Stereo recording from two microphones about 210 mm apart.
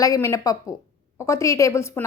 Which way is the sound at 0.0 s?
15° left (ahead or behind).